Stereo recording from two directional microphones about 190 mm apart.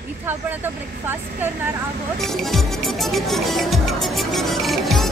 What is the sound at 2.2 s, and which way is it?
Music, centre (ahead or behind).